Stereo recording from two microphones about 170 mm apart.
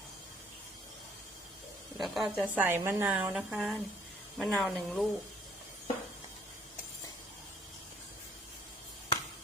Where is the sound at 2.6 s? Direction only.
10° right (ahead or behind).